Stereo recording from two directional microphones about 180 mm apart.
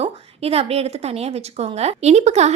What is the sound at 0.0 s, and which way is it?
A woman's voice, 35° right (ahead or behind).